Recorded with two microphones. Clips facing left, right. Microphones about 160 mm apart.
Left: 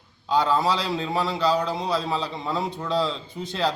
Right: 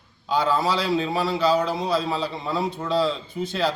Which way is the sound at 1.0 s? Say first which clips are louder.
Right 2 dB; 10° right (ahead or behind).